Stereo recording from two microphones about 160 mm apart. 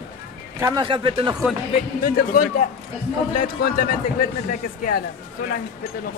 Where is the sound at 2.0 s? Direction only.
60° left (ahead or behind).